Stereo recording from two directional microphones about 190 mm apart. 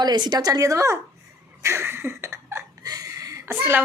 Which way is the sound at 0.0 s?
20° right (ahead or behind).